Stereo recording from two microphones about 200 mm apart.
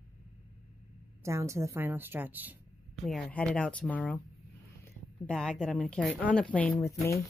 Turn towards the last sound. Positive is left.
turn(degrees=15)  # may be behind; listen again after turning